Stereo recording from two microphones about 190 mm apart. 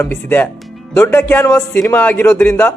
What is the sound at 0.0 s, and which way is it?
A man's voice, 10° left (ahead or behind).